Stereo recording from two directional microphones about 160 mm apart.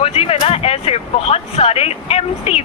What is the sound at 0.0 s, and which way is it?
Speech, 40° left (ahead or behind).